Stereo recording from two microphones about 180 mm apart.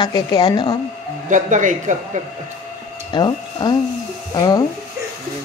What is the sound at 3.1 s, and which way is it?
A woman's voice, 25° left (ahead or behind).